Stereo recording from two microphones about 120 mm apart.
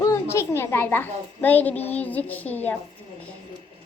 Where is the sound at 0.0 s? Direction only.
25° left (ahead or behind).